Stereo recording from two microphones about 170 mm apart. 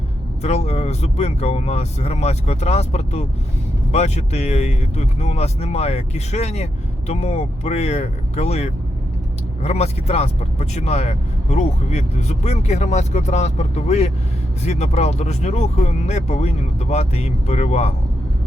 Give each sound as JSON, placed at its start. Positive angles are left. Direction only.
{"t": 0.4, "sound": "speech", "side_deg": 40}